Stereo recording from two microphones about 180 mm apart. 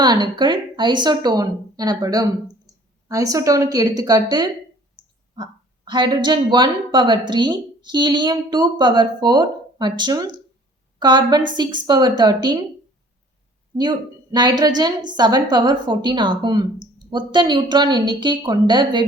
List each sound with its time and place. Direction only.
0.0 s a woman's voice: 25° right (ahead or behind)
2.7 s a sound: 20° right (ahead or behind)
3.1 s a woman's voice: 20° right (ahead or behind)
13.7 s a woman's voice: 25° right (ahead or behind)